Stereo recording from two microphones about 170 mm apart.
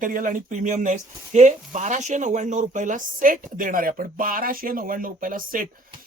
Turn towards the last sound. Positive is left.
turn(degrees=-55)  # may be behind; listen again after turning